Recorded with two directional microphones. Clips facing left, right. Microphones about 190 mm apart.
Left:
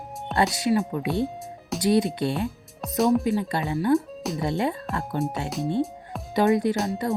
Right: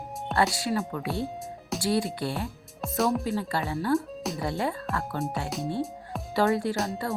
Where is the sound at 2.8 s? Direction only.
Centre (ahead or behind).